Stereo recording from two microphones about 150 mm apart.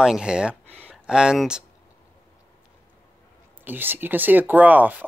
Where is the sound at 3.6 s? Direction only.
15° right (ahead or behind).